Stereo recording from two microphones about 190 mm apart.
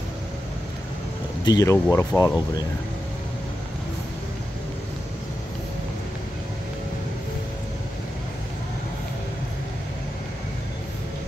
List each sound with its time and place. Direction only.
1.4 s speech: 20° left (ahead or behind)